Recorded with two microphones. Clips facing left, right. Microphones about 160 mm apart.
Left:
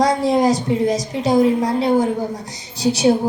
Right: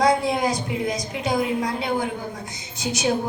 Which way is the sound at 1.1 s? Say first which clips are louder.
Left 8 dB; 35° left (ahead or behind).